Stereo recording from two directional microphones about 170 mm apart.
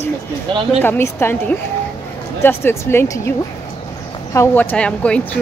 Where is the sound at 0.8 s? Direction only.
15° left (ahead or behind).